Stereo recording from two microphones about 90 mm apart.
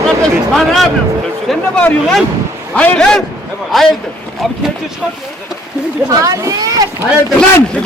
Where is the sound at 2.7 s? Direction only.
10° left (ahead or behind).